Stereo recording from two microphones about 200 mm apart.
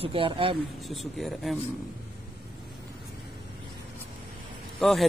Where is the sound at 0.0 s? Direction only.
25° right (ahead or behind).